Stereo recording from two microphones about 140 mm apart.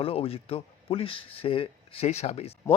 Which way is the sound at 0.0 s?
45° left (ahead or behind).